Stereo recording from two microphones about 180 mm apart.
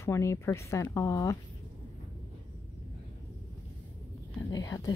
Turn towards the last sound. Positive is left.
turn(degrees=20)  # may be behind; listen again after turning